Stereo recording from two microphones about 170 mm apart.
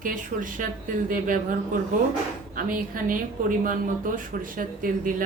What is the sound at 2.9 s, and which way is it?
Speech, 55° right (ahead or behind).